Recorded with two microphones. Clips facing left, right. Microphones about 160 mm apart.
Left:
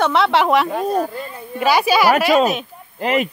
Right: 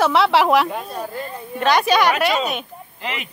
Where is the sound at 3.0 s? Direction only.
45° left (ahead or behind).